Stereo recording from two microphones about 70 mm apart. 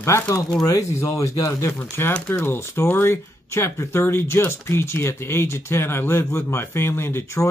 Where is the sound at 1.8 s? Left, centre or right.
Left.